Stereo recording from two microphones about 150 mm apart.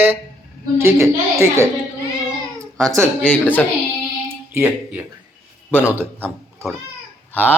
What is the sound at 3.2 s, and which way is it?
Speech, 10° left (ahead or behind).